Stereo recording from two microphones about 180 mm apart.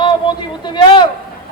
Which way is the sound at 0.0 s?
25° left (ahead or behind).